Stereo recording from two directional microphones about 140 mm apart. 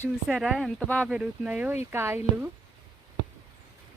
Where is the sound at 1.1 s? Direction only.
10° right (ahead or behind).